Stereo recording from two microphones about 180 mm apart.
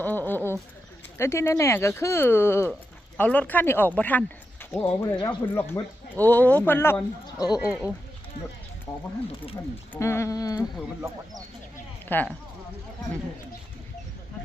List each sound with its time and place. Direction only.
0.0 s a sound: 10° left (ahead or behind)
1.2 s speech: 15° left (ahead or behind)
7.5 s speech: 5° right (ahead or behind)
9.9 s speech: 15° left (ahead or behind)
12.0 s speech: 10° left (ahead or behind)